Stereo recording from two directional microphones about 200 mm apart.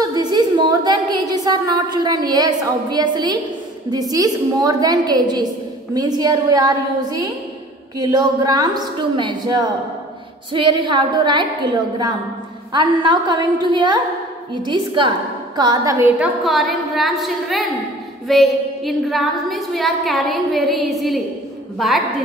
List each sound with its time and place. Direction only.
0.0 s a sound: 20° right (ahead or behind)
3.9 s a woman's voice: 20° right (ahead or behind)
12.7 s a woman's voice: 25° right (ahead or behind)
16.2 s a woman's voice: centre (ahead or behind)